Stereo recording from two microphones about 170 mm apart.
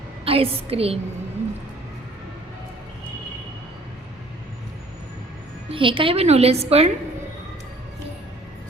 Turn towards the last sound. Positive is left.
turn(degrees=-35)  # may be behind; listen again after turning